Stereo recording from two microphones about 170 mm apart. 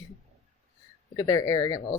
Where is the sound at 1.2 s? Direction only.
20° left (ahead or behind).